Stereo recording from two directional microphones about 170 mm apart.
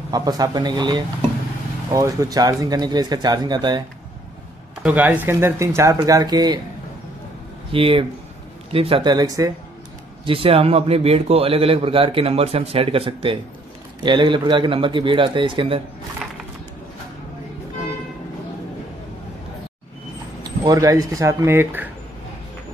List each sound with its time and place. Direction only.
0.1 s speech: 20° right (ahead or behind)
4.8 s speech: 10° right (ahead or behind)
7.7 s a man's voice: 30° right (ahead or behind)
10.2 s a man's voice: 35° right (ahead or behind)
20.6 s speech: 20° right (ahead or behind)